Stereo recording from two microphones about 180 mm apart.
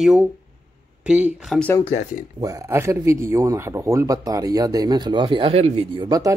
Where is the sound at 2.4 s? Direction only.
20° right (ahead or behind).